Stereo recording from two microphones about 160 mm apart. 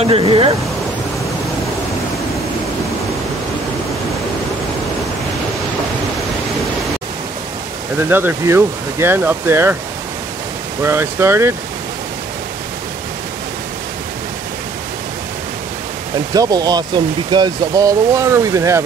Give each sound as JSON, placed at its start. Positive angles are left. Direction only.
{"t": 0.0, "sound": "speech", "side_deg": -35}
{"t": 8.1, "sound": "speech", "side_deg": -15}
{"t": 10.8, "sound": "speech", "side_deg": -15}
{"t": 16.3, "sound": "speech", "side_deg": -25}